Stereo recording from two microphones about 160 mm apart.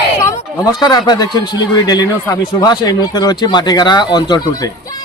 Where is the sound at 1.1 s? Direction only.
25° left (ahead or behind).